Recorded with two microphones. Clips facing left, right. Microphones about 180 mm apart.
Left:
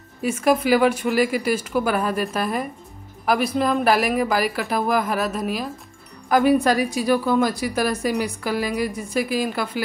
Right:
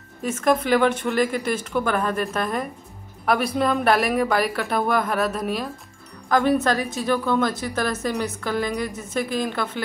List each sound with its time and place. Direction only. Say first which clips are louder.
0.2 s speech: left 2 dB; 10° left (ahead or behind)